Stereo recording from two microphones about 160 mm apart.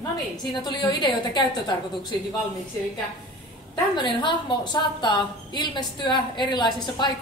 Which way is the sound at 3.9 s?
30° left (ahead or behind).